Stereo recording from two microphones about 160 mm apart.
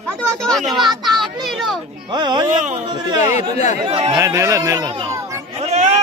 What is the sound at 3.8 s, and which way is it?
Speech, 35° right (ahead or behind).